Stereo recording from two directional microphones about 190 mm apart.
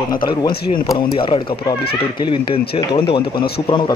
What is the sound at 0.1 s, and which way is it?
Speech, 20° left (ahead or behind).